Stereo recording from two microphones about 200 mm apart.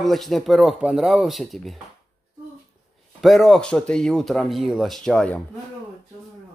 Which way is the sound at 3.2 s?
Centre (ahead or behind).